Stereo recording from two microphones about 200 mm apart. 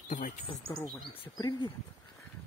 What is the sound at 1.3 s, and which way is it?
Speech, 20° left (ahead or behind).